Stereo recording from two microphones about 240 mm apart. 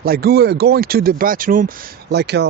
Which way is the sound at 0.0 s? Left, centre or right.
Right.